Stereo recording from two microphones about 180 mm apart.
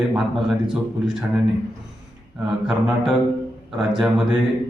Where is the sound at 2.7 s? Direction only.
5° right (ahead or behind).